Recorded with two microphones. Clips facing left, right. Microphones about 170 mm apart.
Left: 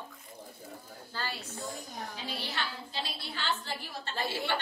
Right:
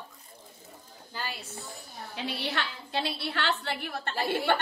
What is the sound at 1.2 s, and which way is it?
Speech, 15° right (ahead or behind).